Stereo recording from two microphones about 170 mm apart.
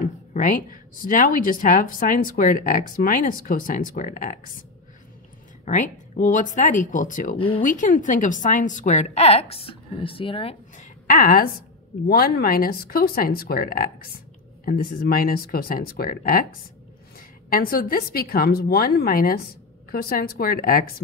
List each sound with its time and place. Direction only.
0.3 s a woman's voice: 50° left (ahead or behind)
5.7 s a woman's voice: 45° left (ahead or behind)
7.3 s speech: 30° left (ahead or behind)
7.6 s a woman's voice: 50° left (ahead or behind); by 10.5 s 30° left (ahead or behind)
10.8 s a woman's voice: 55° left (ahead or behind)
17.5 s speech: 60° left (ahead or behind)